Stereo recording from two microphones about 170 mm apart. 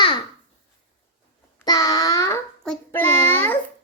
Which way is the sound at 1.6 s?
20° left (ahead or behind).